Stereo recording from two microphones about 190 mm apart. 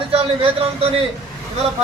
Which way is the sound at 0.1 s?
30° right (ahead or behind).